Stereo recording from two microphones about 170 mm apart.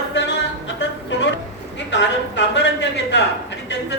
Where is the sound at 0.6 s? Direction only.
90° left.